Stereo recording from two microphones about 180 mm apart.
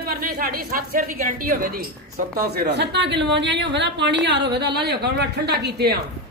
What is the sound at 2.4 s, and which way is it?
A woman's voice, 65° right (ahead or behind).